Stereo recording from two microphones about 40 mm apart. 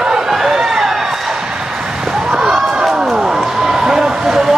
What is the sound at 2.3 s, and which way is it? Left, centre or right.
Basketball bounce, centre.